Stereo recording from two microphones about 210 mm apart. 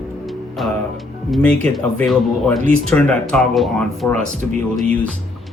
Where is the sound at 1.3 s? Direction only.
5° left (ahead or behind).